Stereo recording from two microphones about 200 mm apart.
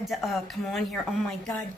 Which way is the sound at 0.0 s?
Centre (ahead or behind).